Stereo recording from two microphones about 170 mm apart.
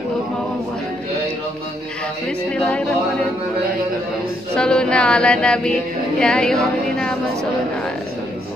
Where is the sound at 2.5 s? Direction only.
5° left (ahead or behind).